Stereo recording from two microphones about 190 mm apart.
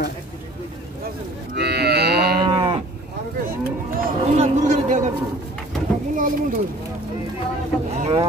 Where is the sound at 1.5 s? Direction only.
60° right (ahead or behind).